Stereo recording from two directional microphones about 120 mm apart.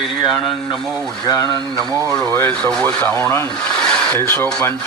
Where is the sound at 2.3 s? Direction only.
15° left (ahead or behind).